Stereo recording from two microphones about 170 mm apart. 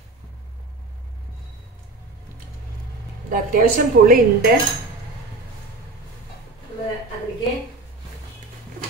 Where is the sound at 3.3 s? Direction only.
50° right (ahead or behind).